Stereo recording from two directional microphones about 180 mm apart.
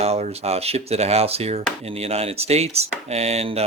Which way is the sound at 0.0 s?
35° right (ahead or behind).